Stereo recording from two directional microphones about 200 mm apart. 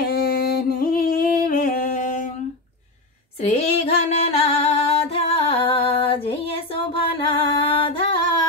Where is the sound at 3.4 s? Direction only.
30° left (ahead or behind).